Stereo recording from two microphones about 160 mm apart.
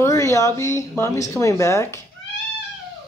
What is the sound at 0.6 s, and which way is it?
Speech, 15° left (ahead or behind).